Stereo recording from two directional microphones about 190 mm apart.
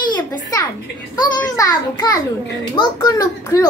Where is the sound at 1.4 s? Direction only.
15° left (ahead or behind).